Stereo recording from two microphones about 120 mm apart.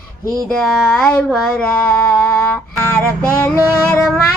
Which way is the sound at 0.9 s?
10° left (ahead or behind).